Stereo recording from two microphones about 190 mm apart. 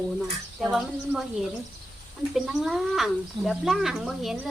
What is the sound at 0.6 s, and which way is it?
Speech, centre (ahead or behind).